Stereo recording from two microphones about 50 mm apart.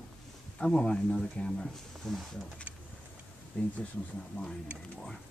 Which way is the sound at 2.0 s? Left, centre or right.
Centre.